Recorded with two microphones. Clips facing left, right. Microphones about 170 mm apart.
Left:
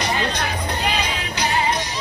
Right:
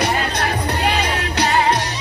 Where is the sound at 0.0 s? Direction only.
60° right (ahead or behind).